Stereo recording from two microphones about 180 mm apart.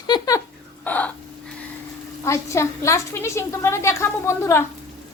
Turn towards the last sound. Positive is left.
turn(degrees=15)  # may be behind; listen again after turning